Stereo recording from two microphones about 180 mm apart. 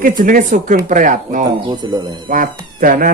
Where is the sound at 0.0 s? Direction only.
50° right (ahead or behind).